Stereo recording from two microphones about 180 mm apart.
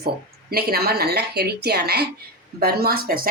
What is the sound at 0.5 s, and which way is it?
Speech, 60° right (ahead or behind).